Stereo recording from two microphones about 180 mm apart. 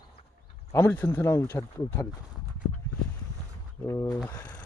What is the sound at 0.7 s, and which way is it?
Speech, 15° left (ahead or behind).